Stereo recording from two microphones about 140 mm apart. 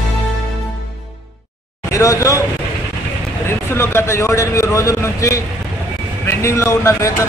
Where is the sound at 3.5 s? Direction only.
15° left (ahead or behind).